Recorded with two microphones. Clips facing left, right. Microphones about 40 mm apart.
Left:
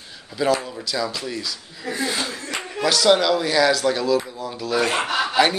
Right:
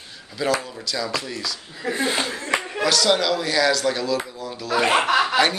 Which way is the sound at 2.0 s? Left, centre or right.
Right.